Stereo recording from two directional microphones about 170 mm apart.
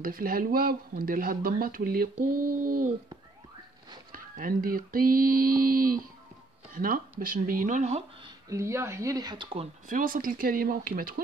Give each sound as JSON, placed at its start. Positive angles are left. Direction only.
{"t": 0.0, "sound": "speech", "side_deg": -55}
{"t": 4.1, "sound": "speech", "side_deg": -55}
{"t": 8.2, "sound": "speech", "side_deg": -20}
{"t": 9.8, "sound": "speech", "side_deg": -55}